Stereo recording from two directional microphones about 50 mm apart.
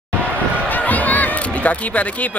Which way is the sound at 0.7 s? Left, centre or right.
Left.